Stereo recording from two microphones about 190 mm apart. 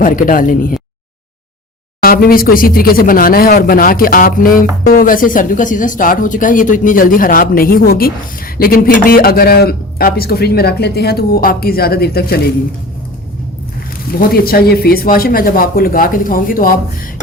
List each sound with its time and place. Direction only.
0.0 s speech: 45° left (ahead or behind)
2.0 s speech: 50° left (ahead or behind)
14.2 s speech: 50° left (ahead or behind)